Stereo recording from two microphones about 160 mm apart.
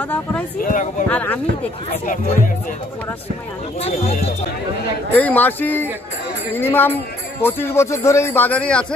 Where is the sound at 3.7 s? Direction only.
40° left (ahead or behind).